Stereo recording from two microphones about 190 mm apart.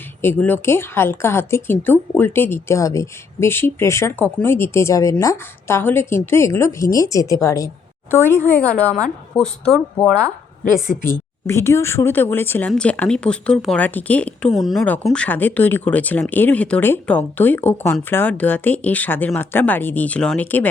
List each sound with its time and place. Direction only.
0.2 s a woman's voice: 10° left (ahead or behind)